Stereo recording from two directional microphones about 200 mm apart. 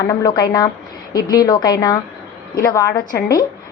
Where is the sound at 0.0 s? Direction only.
15° left (ahead or behind).